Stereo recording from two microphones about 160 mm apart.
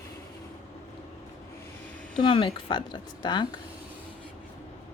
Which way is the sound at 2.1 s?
35° left (ahead or behind).